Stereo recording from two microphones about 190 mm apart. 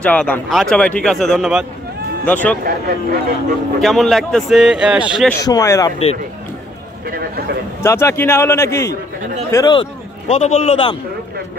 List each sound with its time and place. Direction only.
0.0 s a man's voice: 5° left (ahead or behind)
2.6 s speech: 50° right (ahead or behind)
3.8 s speech: centre (ahead or behind)
5.4 s a man's voice: 20° left (ahead or behind)
7.1 s speech: 55° right (ahead or behind)
7.8 s a man's voice: 15° left (ahead or behind); by 11.0 s 30° left (ahead or behind)